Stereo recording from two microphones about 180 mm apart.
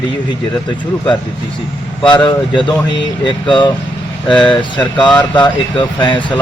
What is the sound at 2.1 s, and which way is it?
Speech, 25° left (ahead or behind).